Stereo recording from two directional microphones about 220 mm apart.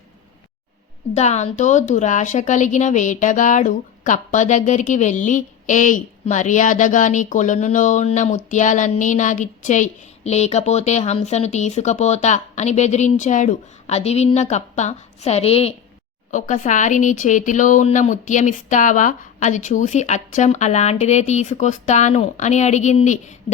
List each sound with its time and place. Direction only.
1.1 s speech: 30° left (ahead or behind)